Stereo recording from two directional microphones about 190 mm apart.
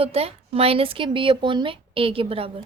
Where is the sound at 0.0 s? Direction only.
30° right (ahead or behind).